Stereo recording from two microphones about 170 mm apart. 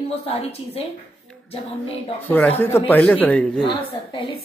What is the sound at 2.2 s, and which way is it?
Speech, 10° left (ahead or behind).